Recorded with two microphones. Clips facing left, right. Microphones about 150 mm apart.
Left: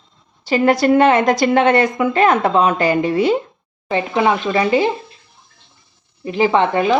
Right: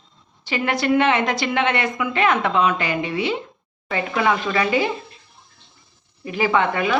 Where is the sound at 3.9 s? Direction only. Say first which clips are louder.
Left 4 dB; 25° left (ahead or behind).